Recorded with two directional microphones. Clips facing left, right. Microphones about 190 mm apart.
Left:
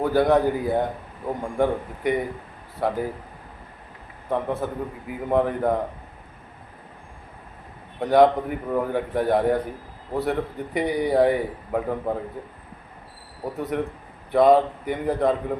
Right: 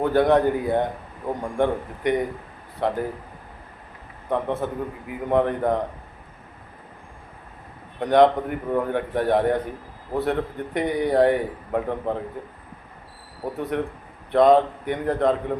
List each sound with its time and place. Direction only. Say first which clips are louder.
0.0 s a man's voice: right 1 dB; 5° left (ahead or behind)
4.3 s a man's voice: right 1 dB; 5° left (ahead or behind)
7.9 s a man's voice: even; 5° left (ahead or behind)
13.6 s a man's voice: even; 5° left (ahead or behind)